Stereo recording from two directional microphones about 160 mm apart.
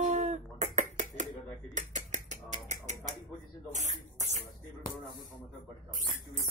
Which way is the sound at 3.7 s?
45° right (ahead or behind).